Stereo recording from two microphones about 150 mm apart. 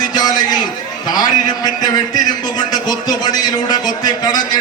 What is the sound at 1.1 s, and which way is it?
A man's voice, 25° left (ahead or behind).